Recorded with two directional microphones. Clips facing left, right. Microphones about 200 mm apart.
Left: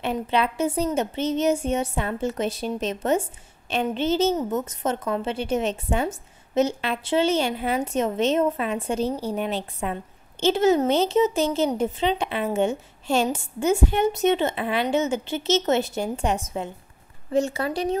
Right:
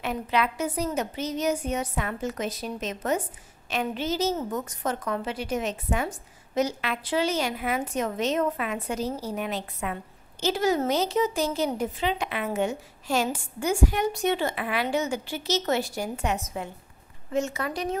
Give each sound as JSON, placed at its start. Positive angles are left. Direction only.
{"t": 0.0, "sound": "a woman's voice", "side_deg": 30}